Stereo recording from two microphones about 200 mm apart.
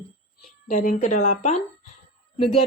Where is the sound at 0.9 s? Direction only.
35° left (ahead or behind).